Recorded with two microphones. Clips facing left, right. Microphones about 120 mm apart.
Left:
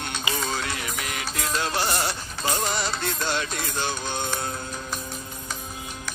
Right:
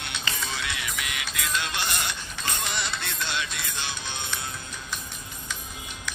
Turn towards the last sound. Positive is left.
turn(degrees=45)  # may be behind; listen again after turning